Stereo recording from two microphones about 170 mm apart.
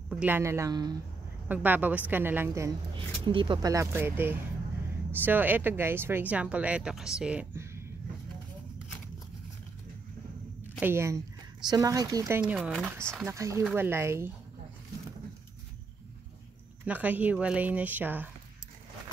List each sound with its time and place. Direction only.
0.1 s speech: 10° right (ahead or behind)
1.5 s speech: 10° right (ahead or behind)
3.0 s speech: 30° right (ahead or behind); by 7.8 s 10° right (ahead or behind)
10.8 s speech: 15° right (ahead or behind)
12.4 s speech: 10° right (ahead or behind)
16.8 s speech: 10° right (ahead or behind)